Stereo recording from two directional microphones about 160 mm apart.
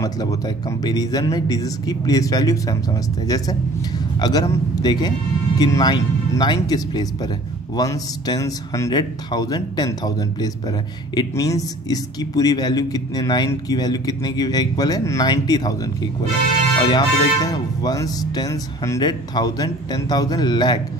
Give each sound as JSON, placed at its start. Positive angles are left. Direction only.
{"t": 0.0, "sound": "speech", "side_deg": 20}